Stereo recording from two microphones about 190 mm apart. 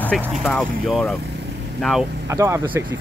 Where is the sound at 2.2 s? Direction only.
15° right (ahead or behind).